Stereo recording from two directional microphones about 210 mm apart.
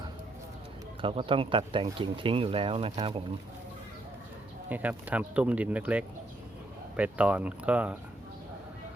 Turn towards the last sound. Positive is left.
turn(degrees=-5)  # may be behind; listen again after turning